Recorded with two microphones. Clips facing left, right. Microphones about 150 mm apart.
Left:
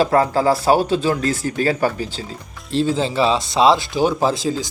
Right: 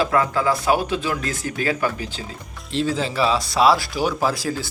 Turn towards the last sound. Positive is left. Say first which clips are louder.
# left 3 dB
turn(degrees=20)  # may be behind; listen again after turning